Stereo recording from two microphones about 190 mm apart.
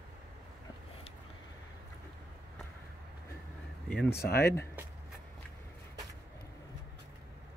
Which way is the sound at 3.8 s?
5° left (ahead or behind).